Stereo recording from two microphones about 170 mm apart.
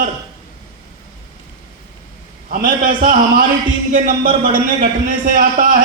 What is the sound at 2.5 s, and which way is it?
A man's voice, 55° right (ahead or behind).